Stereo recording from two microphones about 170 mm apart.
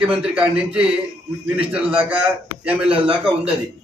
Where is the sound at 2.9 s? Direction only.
30° right (ahead or behind).